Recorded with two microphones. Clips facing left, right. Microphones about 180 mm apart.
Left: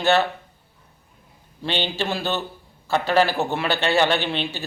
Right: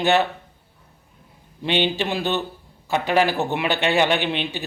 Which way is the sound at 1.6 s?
15° right (ahead or behind).